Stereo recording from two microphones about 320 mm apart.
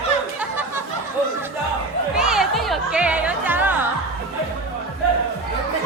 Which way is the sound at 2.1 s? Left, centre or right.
Centre.